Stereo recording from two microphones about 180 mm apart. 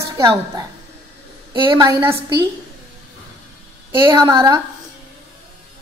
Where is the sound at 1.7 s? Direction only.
25° right (ahead or behind).